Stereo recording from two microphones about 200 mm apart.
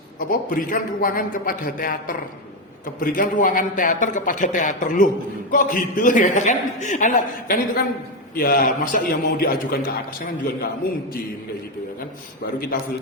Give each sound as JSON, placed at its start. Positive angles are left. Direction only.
{"t": 0.2, "sound": "a man's voice", "side_deg": 45}